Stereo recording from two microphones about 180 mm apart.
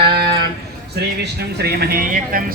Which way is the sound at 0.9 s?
65° right (ahead or behind).